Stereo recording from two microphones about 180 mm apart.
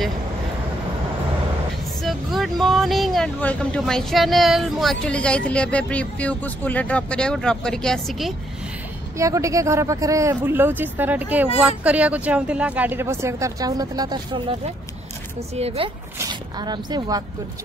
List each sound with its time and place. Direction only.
2.0 s speech: centre (ahead or behind)
9.1 s speech: 15° right (ahead or behind)
15.3 s speech: 35° right (ahead or behind)
16.2 s speech: 25° right (ahead or behind)